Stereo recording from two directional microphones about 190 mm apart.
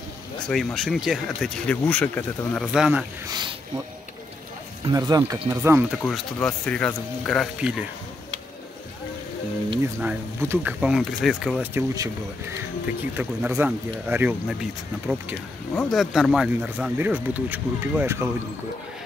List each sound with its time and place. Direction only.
0.5 s speech: centre (ahead or behind)
3.3 s speech: 25° right (ahead or behind)
4.9 s speech: 20° right (ahead or behind)
6.0 s speech: centre (ahead or behind)
9.8 s speech: 10° right (ahead or behind)
11.6 s speech: 15° right (ahead or behind)
13.1 s speech: 10° right (ahead or behind)